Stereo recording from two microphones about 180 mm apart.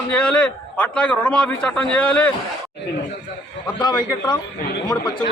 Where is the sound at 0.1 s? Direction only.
5° left (ahead or behind).